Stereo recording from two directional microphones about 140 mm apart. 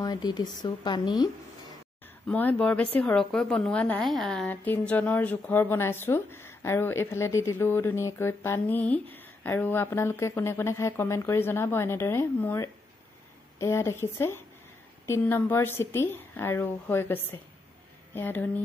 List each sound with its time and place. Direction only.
0.0 s speech: 30° left (ahead or behind)
2.2 s speech: 10° left (ahead or behind)
4.5 s speech: 10° left (ahead or behind)